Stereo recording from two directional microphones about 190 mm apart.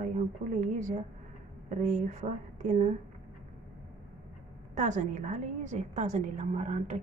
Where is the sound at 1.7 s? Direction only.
40° right (ahead or behind).